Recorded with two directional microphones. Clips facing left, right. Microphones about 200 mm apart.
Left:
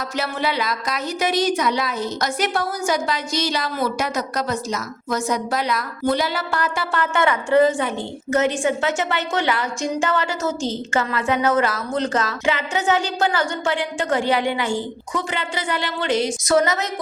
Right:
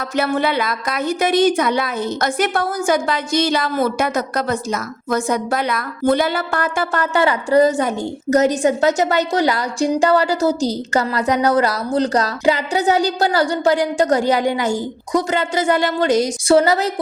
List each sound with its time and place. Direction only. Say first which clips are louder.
0.2 s a woman's voice: right 6 dB; 55° right (ahead or behind)
16.5 s a woman's voice: right 5 dB; 30° right (ahead or behind)